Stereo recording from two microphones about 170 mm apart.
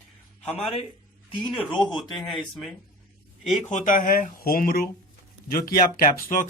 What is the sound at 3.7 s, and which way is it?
Speech, 45° left (ahead or behind).